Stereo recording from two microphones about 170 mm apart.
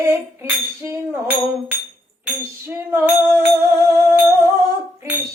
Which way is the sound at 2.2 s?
10° right (ahead or behind).